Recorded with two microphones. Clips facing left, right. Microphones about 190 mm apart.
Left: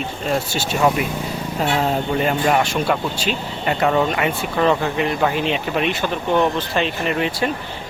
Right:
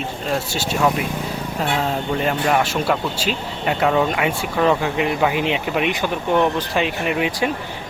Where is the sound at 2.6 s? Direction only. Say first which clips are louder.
Even; 5° right (ahead or behind).